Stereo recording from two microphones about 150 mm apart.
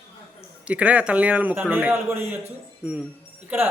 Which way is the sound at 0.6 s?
10° right (ahead or behind).